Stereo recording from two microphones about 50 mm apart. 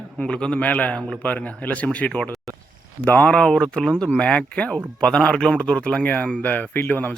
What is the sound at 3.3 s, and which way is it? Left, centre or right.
A man's voice, centre.